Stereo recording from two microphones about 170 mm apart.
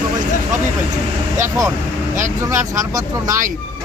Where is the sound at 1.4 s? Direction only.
20° right (ahead or behind).